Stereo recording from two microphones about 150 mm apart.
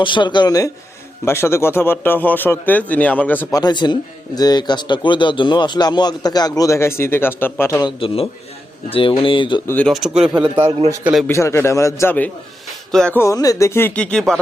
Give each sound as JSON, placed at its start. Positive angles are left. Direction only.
{"t": 0.0, "sound": "speech", "side_deg": 30}
{"t": 3.5, "sound": "speech", "side_deg": 30}
{"t": 7.8, "sound": "speech", "side_deg": 35}
{"t": 9.6, "sound": "speech", "side_deg": 5}
{"t": 10.3, "sound": "a man's voice", "side_deg": -30}
{"t": 11.0, "sound": "speech", "side_deg": 0}
{"t": 11.3, "sound": "speech", "side_deg": 20}
{"t": 13.1, "sound": "speech", "side_deg": 20}